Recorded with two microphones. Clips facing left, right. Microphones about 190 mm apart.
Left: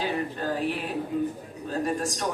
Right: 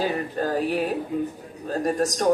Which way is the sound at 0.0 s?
45° right (ahead or behind).